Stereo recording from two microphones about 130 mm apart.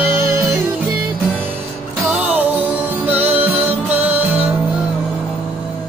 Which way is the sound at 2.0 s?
10° right (ahead or behind).